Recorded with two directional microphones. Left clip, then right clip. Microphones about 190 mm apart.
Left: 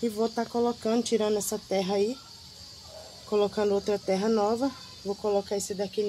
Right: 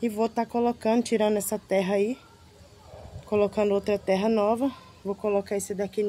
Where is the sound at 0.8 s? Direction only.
35° right (ahead or behind).